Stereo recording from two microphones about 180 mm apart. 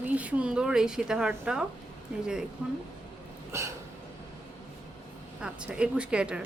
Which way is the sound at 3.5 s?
15° right (ahead or behind).